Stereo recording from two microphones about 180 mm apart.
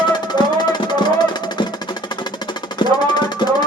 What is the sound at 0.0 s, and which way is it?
Music, 25° left (ahead or behind).